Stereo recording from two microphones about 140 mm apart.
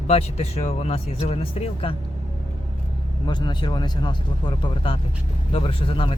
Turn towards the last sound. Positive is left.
turn(degrees=40)  # may be behind; listen again after turning